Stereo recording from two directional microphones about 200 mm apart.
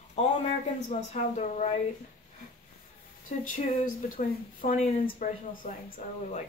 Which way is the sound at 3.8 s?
40° left (ahead or behind).